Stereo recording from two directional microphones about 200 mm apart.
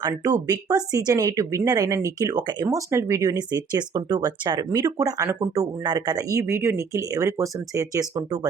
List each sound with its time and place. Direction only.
0.4 s speech: 20° right (ahead or behind)